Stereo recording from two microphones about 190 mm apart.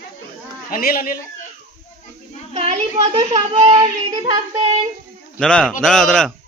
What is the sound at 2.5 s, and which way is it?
Speech, 35° right (ahead or behind).